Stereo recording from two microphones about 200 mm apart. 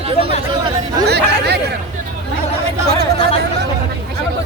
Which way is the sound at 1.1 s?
55° right (ahead or behind).